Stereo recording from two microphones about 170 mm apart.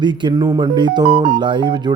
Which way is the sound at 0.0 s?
25° right (ahead or behind).